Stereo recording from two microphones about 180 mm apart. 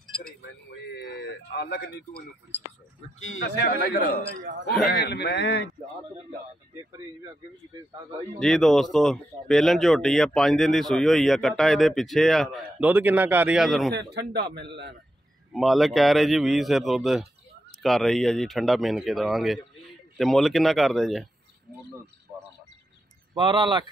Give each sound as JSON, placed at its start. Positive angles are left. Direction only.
{"t": 0.9, "sound": "a sound", "side_deg": 70}
{"t": 3.2, "sound": "speech", "side_deg": 90}
{"t": 3.6, "sound": "a man's voice", "side_deg": 55}
{"t": 8.4, "sound": "speech", "side_deg": 0}
{"t": 12.8, "sound": "a man's voice", "side_deg": -10}
{"t": 13.9, "sound": "a man's voice", "side_deg": -65}
{"t": 15.5, "sound": "speech", "side_deg": 0}
{"t": 23.3, "sound": "speech", "side_deg": -30}